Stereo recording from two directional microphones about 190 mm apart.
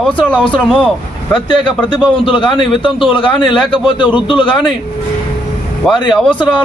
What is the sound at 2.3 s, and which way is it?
A man's voice, 25° left (ahead or behind).